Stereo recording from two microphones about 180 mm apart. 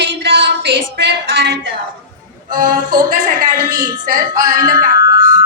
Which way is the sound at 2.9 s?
45° right (ahead or behind).